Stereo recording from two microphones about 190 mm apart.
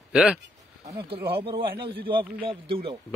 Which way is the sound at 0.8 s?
25° right (ahead or behind).